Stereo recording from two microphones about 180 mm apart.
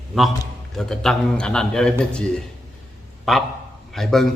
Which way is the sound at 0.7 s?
5° left (ahead or behind).